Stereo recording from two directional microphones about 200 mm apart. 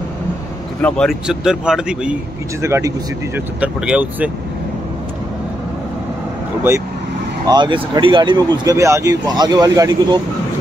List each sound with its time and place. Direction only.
0.7 s speech: 5° left (ahead or behind)
7.4 s speech: 20° right (ahead or behind)